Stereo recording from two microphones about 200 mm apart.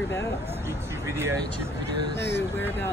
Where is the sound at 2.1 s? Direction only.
60° left (ahead or behind).